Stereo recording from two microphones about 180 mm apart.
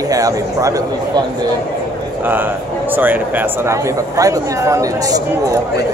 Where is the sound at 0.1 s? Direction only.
20° right (ahead or behind).